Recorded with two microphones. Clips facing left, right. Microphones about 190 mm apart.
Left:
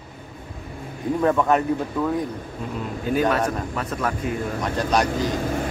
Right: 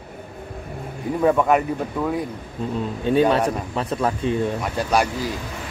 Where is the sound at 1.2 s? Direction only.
10° right (ahead or behind).